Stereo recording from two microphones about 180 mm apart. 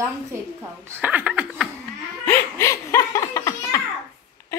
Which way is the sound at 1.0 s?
10° right (ahead or behind).